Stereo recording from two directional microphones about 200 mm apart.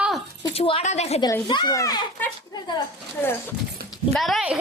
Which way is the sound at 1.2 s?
20° left (ahead or behind).